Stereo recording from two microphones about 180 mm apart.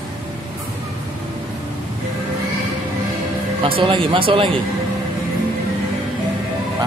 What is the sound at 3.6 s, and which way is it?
Speech, 30° right (ahead or behind).